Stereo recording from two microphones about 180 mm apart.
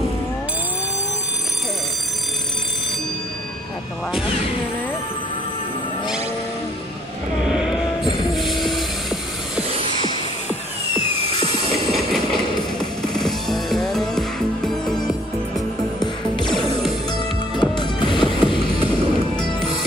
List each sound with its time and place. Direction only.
7.4 s train: 5° right (ahead or behind)
11.1 s music: 35° right (ahead or behind)
13.2 s music: centre (ahead or behind)
16.4 s music: centre (ahead or behind)
17.6 s music: 25° left (ahead or behind)